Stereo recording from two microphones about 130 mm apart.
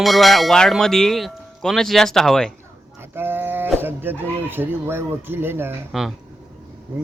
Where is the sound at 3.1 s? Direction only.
15° right (ahead or behind).